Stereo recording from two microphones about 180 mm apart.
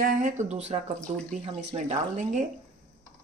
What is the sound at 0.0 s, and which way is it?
Speech, 50° right (ahead or behind).